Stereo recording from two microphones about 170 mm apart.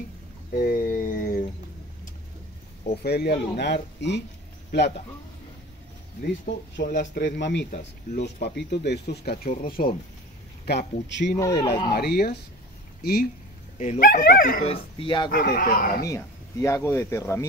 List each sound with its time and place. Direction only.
0.6 s a sound: 55° left (ahead or behind)
2.9 s speech: 70° left (ahead or behind); by 4.2 s 90° left
4.6 s speech: 80° left
6.5 s speech: 75° left (ahead or behind)
7.2 s speech: 90° left
8.2 s speech: 75° left (ahead or behind); by 9.9 s 60° left (ahead or behind)
10.6 s a man's voice: 70° left (ahead or behind)
11.1 s speech: 90° left
11.3 s speech: 20° left (ahead or behind)
11.9 s speech: 65° left (ahead or behind)
13.7 s speech: 45° left (ahead or behind)
14.7 s speech: 30° left (ahead or behind)
15.3 s speech: 60° left (ahead or behind)
16.1 s speech: 15° left (ahead or behind)